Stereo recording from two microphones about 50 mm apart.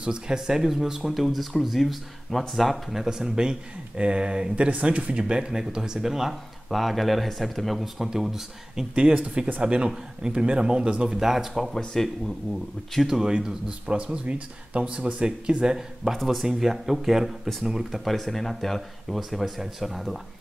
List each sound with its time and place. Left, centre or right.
0.0 s speech: centre
8.9 s speech: right; by 11.7 s centre
11.9 s speech: centre
13.0 s speech: centre
16.2 s speech: centre
18.0 s speech: centre